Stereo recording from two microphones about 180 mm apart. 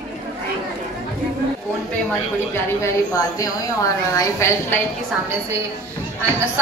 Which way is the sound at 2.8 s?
20° left (ahead or behind).